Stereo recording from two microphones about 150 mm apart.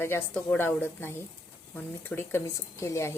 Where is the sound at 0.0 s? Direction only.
15° left (ahead or behind).